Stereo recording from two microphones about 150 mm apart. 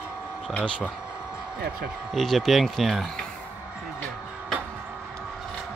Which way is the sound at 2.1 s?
Centre (ahead or behind).